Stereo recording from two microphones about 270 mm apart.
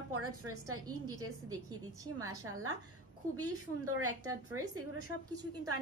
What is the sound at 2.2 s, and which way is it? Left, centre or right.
A woman's voice, right.